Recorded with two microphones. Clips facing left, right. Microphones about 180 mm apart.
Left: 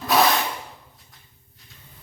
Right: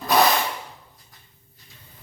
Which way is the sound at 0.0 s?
Centre (ahead or behind).